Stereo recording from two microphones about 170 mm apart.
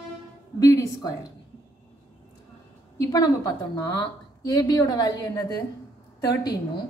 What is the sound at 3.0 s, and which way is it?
A woman's voice, 20° left (ahead or behind).